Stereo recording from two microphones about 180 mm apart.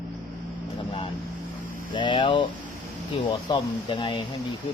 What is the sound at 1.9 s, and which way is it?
Speech, 25° left (ahead or behind).